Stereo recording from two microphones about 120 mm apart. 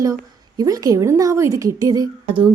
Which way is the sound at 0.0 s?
30° right (ahead or behind).